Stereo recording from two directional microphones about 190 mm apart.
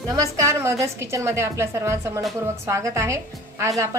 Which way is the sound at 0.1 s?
15° right (ahead or behind).